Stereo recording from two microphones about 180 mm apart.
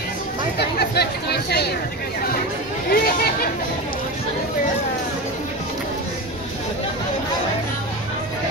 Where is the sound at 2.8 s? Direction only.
55° left (ahead or behind).